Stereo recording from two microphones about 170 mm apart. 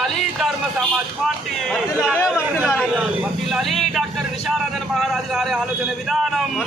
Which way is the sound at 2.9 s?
5° right (ahead or behind).